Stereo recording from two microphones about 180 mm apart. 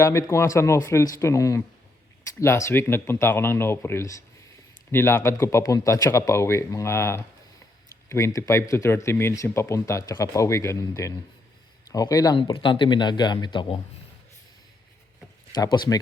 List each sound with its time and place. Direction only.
0.0 s speech: 15° left (ahead or behind)
15.5 s speech: 25° left (ahead or behind)